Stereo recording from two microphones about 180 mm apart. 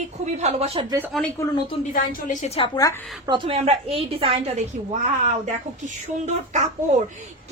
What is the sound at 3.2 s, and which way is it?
A woman's voice, 25° right (ahead or behind).